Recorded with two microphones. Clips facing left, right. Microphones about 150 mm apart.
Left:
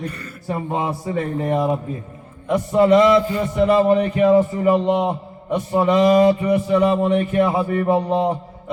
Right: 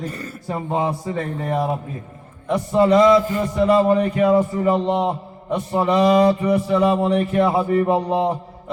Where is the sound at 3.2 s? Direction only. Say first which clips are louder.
Even; 45° right (ahead or behind).